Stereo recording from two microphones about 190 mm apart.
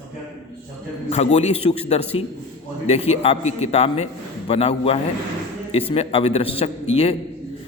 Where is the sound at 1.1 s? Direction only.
35° left (ahead or behind).